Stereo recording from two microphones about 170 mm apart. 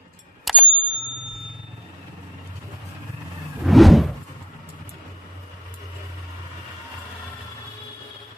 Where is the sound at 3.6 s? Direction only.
Centre (ahead or behind).